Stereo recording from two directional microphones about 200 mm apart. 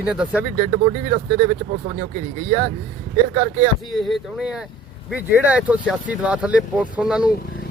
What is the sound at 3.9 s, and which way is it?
Speech, centre (ahead or behind).